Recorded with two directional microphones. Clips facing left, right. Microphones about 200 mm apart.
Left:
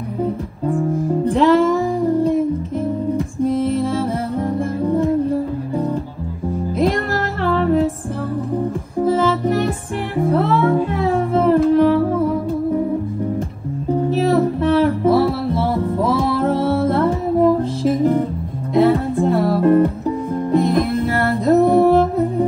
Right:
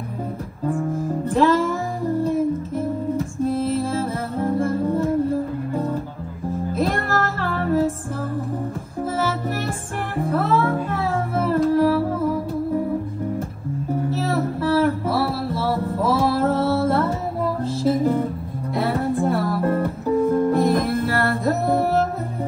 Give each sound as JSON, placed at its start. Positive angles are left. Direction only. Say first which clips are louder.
{"t": 1.2, "sound": "music", "louder": "left 4 dB", "side_deg": 15}
{"t": 3.7, "sound": "music", "louder": "left 4 dB", "side_deg": 15}
{"t": 6.8, "sound": "music", "louder": "left 4 dB", "side_deg": 15}
{"t": 10.3, "sound": "music", "louder": "left 4 dB", "side_deg": 15}
{"t": 14.1, "sound": "music", "louder": "left 7 dB", "side_deg": 15}